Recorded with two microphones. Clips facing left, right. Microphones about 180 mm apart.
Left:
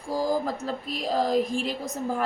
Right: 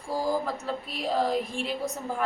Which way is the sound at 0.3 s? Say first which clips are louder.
Left 2 dB; 40° left (ahead or behind).